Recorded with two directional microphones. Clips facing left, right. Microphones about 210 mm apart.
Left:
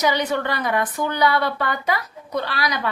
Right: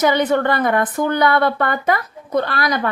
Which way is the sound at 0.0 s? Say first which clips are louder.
Right 5 dB; 50° right (ahead or behind).